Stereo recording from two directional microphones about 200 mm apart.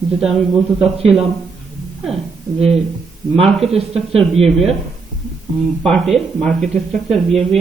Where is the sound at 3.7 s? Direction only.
30° right (ahead or behind).